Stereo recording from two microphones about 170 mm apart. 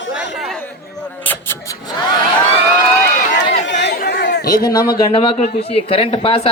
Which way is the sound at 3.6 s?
90° left.